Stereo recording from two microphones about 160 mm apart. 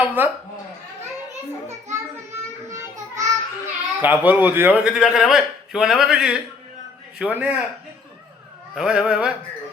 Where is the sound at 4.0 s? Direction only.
10° right (ahead or behind).